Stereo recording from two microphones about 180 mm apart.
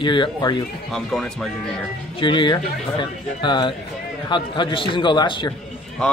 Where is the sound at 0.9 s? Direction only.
5° left (ahead or behind).